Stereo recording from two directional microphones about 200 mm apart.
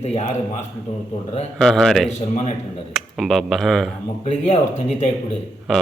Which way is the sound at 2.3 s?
30° left (ahead or behind).